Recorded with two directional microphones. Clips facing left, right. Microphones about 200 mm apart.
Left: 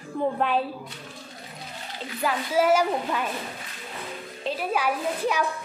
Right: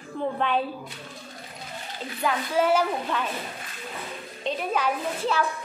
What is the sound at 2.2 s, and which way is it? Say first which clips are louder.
A woman's voice: left 1 dB; 10° left (ahead or behind).